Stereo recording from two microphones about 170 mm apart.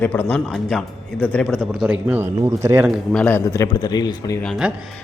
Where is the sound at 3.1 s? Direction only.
10° left (ahead or behind).